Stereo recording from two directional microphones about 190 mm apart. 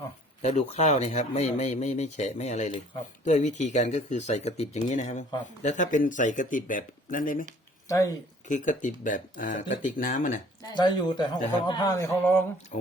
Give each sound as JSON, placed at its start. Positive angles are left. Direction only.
{"t": 0.4, "sound": "speech", "side_deg": 35}
{"t": 7.9, "sound": "speech", "side_deg": 15}
{"t": 8.4, "sound": "speech", "side_deg": 40}
{"t": 10.8, "sound": "a man's voice", "side_deg": 25}
{"t": 12.7, "sound": "speech", "side_deg": 40}